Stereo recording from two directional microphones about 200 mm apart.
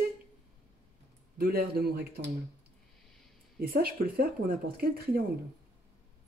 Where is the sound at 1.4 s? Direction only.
50° right (ahead or behind).